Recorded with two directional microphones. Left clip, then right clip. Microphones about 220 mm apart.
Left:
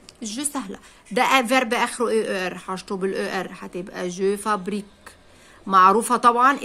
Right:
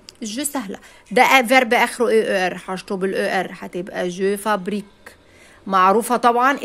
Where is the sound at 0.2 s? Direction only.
20° right (ahead or behind).